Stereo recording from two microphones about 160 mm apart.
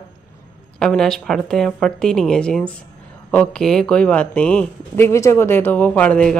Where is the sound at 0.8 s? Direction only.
5° left (ahead or behind).